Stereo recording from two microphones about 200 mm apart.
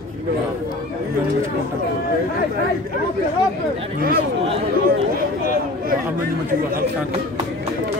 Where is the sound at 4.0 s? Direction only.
45° right (ahead or behind).